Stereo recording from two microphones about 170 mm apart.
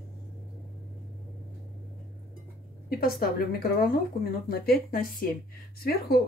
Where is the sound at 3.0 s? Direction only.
65° left (ahead or behind).